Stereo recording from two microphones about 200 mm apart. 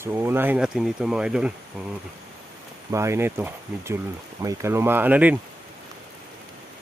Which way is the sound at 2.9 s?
15° right (ahead or behind).